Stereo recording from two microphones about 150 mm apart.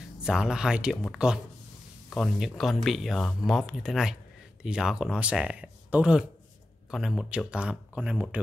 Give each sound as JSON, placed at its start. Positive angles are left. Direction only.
{"t": 0.2, "sound": "speech", "side_deg": -5}